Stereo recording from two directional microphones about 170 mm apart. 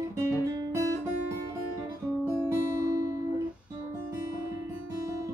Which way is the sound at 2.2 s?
15° right (ahead or behind).